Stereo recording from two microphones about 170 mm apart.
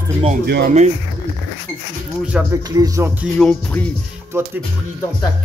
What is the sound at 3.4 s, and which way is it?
Music, 5° left (ahead or behind).